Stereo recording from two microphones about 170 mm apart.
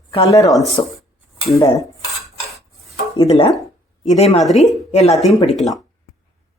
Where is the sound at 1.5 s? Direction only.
20° left (ahead or behind).